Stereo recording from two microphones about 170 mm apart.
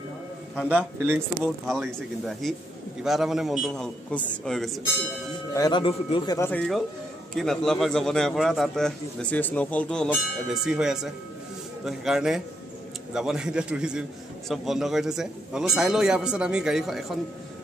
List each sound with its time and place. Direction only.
0.7 s a man's voice: 10° right (ahead or behind)
1.7 s a man's voice: centre (ahead or behind)
5.5 s a man's voice: 25° left (ahead or behind)
6.3 s speech: 15° left (ahead or behind)
7.3 s a man's voice: centre (ahead or behind)